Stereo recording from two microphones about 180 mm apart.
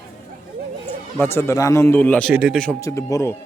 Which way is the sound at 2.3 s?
5° right (ahead or behind).